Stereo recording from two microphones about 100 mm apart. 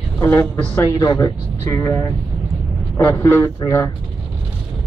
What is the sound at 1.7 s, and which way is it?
Speech, 25° left (ahead or behind).